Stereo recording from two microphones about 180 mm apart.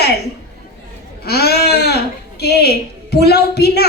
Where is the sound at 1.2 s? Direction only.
60° left (ahead or behind).